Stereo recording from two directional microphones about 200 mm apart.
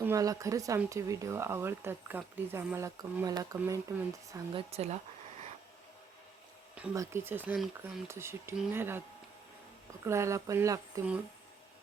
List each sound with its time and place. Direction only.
0.0 s speech: 15° right (ahead or behind)
4.7 s speech: 30° right (ahead or behind)
6.7 s speech: 15° right (ahead or behind)
10.1 s speech: 15° right (ahead or behind)